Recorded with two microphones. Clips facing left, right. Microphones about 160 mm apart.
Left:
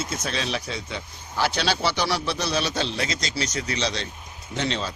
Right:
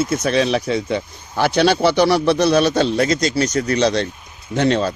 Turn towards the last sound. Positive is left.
turn(degrees=-55)  # may be behind; listen again after turning